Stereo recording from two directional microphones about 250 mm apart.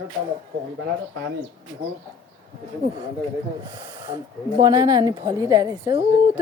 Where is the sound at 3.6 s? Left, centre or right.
Centre.